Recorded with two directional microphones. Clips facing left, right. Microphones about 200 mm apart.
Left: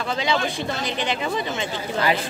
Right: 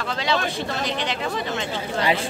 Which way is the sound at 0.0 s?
Centre (ahead or behind).